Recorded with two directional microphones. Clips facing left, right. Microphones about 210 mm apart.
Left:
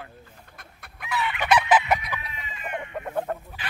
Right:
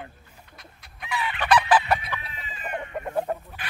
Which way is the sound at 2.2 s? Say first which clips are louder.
Even; 35° right (ahead or behind).